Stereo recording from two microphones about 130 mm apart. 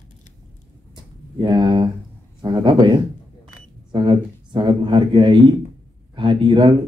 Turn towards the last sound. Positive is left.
turn(degrees=-35)  # may be behind; listen again after turning